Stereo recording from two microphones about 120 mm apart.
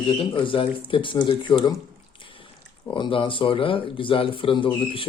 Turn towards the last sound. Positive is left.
turn(degrees=45)  # may be behind; listen again after turning